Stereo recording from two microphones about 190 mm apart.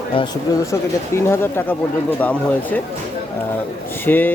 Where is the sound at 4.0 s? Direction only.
10° left (ahead or behind).